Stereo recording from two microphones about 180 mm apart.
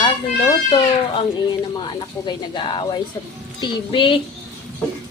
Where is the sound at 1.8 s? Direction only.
25° left (ahead or behind).